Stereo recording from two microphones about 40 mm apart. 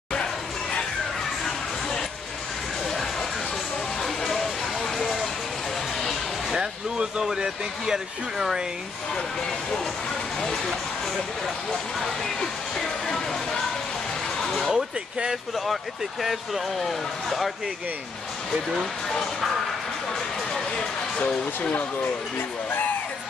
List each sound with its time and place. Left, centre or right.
1.4 s a sound: centre
6.5 s speech: right
11.4 s speech: centre
12.4 s music: centre
14.7 s speech: right
15.5 s speech: centre
18.5 s speech: centre